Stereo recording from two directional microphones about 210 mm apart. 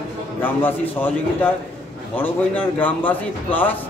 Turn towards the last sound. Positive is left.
turn(degrees=10)  # may be behind; listen again after turning